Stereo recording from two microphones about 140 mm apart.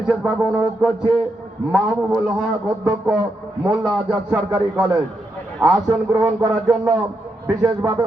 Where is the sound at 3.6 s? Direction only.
10° right (ahead or behind).